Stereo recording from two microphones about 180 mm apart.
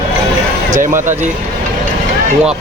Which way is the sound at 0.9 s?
15° right (ahead or behind).